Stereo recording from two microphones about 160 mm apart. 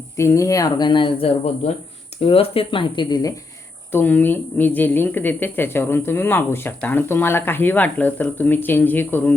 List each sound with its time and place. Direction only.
0.2 s speech: 20° left (ahead or behind)
3.9 s a woman's voice: 10° left (ahead or behind)